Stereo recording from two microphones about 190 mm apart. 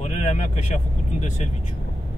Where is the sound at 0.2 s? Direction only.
40° left (ahead or behind).